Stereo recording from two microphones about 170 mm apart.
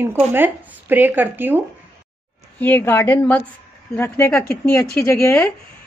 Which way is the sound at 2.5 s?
10° left (ahead or behind).